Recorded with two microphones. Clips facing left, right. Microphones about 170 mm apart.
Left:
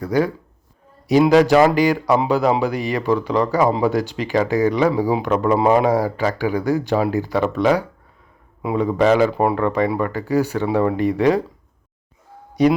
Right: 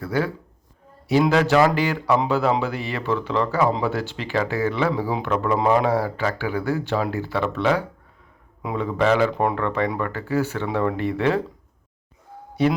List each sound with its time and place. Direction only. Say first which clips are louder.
0.0 s speech: left 5 dB; 15° left (ahead or behind)
12.6 s speech: left 5 dB; 15° left (ahead or behind)